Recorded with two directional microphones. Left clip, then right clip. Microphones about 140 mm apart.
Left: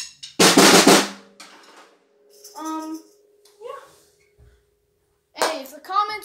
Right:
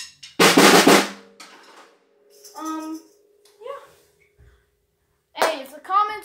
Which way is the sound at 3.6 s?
20° left (ahead or behind).